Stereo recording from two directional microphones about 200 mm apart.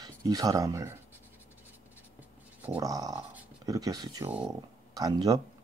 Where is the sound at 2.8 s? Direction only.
15° right (ahead or behind).